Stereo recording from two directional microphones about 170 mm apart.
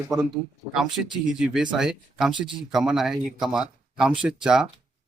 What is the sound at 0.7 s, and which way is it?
Speech, centre (ahead or behind).